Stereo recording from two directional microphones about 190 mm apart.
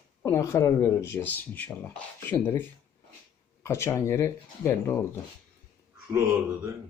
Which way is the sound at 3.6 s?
15° left (ahead or behind).